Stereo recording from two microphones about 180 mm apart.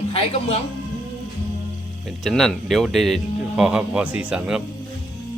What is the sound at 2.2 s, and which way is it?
A man's voice, centre (ahead or behind).